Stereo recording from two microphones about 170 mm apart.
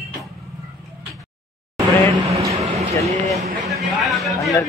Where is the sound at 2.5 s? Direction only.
35° right (ahead or behind).